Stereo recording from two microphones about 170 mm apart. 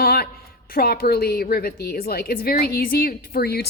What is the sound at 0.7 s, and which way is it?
A woman's voice, 65° left (ahead or behind).